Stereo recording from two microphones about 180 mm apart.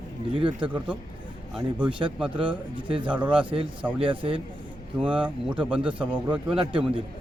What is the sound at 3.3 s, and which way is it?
Speech, 30° right (ahead or behind).